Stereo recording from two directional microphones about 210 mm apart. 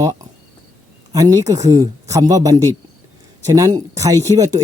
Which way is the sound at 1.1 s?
15° right (ahead or behind).